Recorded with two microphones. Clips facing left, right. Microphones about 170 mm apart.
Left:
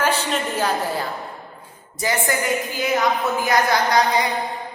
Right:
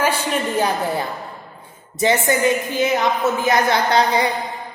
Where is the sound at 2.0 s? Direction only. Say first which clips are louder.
Right 5 dB; 25° right (ahead or behind).